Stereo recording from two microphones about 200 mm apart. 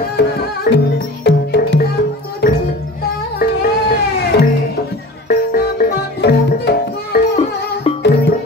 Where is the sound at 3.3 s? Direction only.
50° left (ahead or behind).